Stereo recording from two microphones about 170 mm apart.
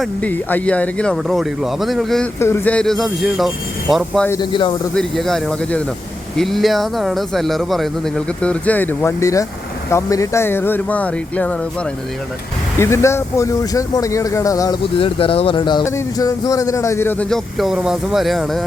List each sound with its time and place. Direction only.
0.0 s speech: 10° left (ahead or behind)
4.4 s speech: 30° left (ahead or behind)
4.9 s speech: centre (ahead or behind)
12.8 s speech: 15° left (ahead or behind)
14.9 s speech: 35° left (ahead or behind); by 18.6 s centre (ahead or behind)